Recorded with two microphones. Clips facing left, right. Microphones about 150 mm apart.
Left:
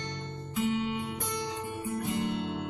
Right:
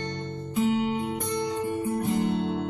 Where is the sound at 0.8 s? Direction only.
35° right (ahead or behind).